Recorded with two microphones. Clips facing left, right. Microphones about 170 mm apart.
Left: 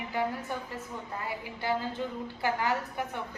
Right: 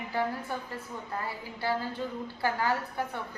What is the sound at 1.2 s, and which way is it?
A woman's voice, 15° left (ahead or behind).